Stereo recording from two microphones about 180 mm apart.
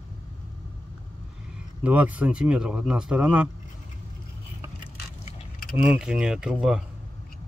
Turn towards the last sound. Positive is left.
turn(degrees=-5)  # may be behind; listen again after turning